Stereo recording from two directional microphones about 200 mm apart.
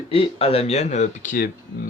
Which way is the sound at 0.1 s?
30° left (ahead or behind).